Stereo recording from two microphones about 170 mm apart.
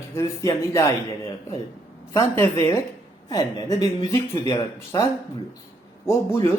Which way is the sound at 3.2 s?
20° left (ahead or behind).